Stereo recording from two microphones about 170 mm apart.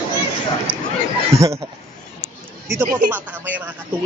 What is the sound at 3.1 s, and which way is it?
Speech, 10° right (ahead or behind).